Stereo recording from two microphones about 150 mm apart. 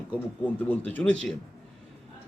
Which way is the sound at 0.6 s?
10° left (ahead or behind).